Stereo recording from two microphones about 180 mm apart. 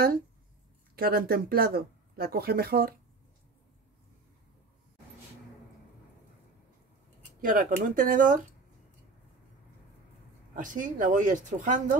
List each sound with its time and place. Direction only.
0.9 s speech: 55° right (ahead or behind)
7.4 s speech: 50° right (ahead or behind)
10.5 s speech: 45° right (ahead or behind)